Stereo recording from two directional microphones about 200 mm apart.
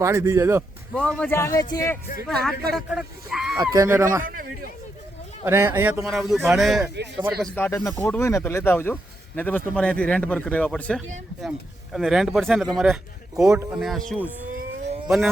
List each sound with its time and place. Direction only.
0.0 s speech: 15° right (ahead or behind)
0.9 s speech: 5° left (ahead or behind)
2.2 s speech: centre (ahead or behind)
3.6 s speech: 20° right (ahead or behind)
4.2 s a man's voice: 45° right (ahead or behind)
5.5 s speech: 15° right (ahead or behind)
7.4 s speech: 10° left (ahead or behind)
15.0 s speech: centre (ahead or behind)